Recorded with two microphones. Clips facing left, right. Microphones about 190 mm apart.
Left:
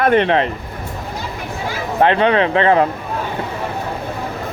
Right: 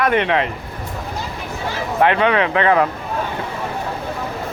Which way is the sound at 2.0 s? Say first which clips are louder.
Left 2 dB; 30° left (ahead or behind).